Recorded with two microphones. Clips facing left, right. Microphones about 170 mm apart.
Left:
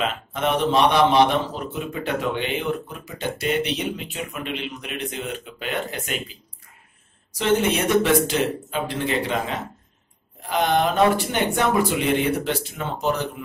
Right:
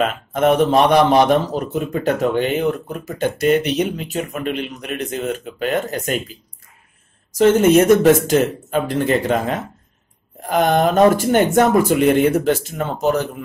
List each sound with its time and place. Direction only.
0.0 s a man's voice: 45° right (ahead or behind)
7.3 s a man's voice: 45° right (ahead or behind)